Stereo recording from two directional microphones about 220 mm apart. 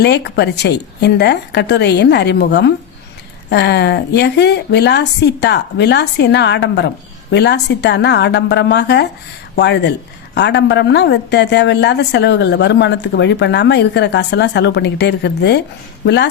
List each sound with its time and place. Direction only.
0.0 s a woman's voice: 50° left (ahead or behind)